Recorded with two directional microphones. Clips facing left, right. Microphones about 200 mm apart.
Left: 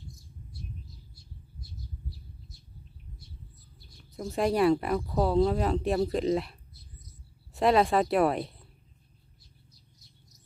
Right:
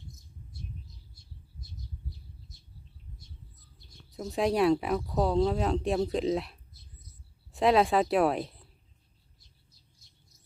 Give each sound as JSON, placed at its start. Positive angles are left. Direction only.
{"t": 4.1, "sound": "speech", "side_deg": 0}